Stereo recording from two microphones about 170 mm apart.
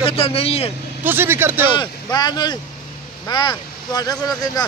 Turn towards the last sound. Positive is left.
turn(degrees=20)  # may be behind; listen again after turning